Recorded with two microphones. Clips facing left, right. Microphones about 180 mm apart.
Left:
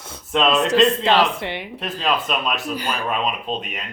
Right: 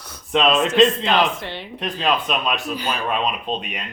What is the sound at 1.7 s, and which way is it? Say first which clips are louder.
Speech: right 2 dB; 5° left (ahead or behind).